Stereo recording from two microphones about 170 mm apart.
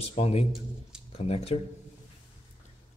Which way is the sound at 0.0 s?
40° left (ahead or behind).